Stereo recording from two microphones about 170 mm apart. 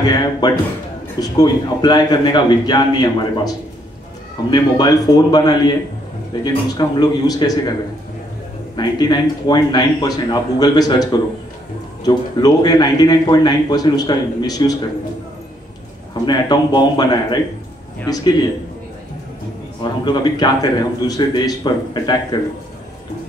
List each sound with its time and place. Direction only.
0.0 s a man's voice: 25° left (ahead or behind)
8.7 s a man's voice: 25° left (ahead or behind)
16.3 s a man's voice: 25° left (ahead or behind)
19.8 s a man's voice: 25° left (ahead or behind)